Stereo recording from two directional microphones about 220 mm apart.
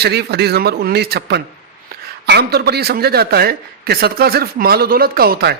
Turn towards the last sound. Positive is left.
turn(degrees=-45)  # may be behind; listen again after turning